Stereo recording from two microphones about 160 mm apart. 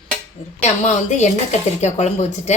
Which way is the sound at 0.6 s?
45° left (ahead or behind).